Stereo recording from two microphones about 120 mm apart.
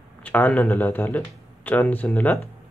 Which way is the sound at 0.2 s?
15° left (ahead or behind).